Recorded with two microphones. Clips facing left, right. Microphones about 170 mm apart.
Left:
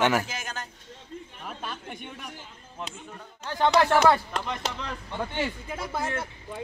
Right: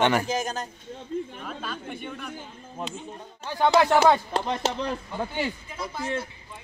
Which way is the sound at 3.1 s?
10° right (ahead or behind).